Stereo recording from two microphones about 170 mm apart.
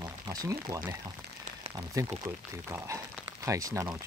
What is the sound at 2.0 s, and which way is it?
Speech, 20° right (ahead or behind).